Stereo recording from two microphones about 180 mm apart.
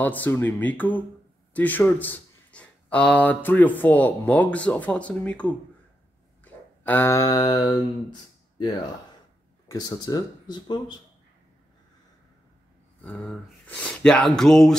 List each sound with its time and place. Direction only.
0.0 s speech: 10° left (ahead or behind)
6.4 s a sound: 10° left (ahead or behind)
9.7 s speech: 20° left (ahead or behind)
13.0 s speech: 5° left (ahead or behind)